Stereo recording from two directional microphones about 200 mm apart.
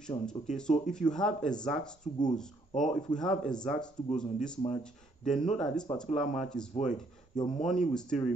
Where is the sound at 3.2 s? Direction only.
5° left (ahead or behind).